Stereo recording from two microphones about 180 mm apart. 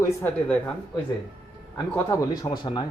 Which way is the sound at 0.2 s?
10° left (ahead or behind).